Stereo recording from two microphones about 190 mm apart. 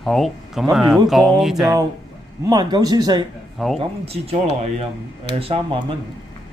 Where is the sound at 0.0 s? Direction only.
Centre (ahead or behind).